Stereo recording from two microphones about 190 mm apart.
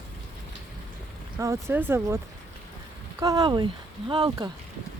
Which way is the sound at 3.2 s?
20° right (ahead or behind).